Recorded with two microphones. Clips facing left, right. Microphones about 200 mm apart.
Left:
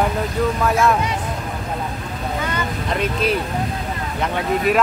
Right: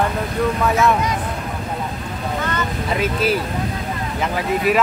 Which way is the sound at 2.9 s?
5° right (ahead or behind).